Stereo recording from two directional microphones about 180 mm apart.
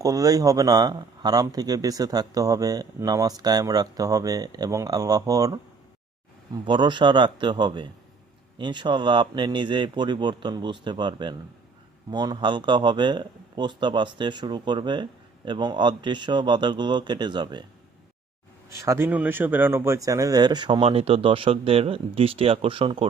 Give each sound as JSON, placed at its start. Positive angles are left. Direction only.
{"t": 0.0, "sound": "a man's voice", "side_deg": -20}
{"t": 6.7, "sound": "a man's voice", "side_deg": -25}
{"t": 18.9, "sound": "a man's voice", "side_deg": -10}